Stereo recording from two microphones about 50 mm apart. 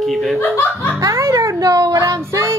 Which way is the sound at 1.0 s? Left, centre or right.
Right.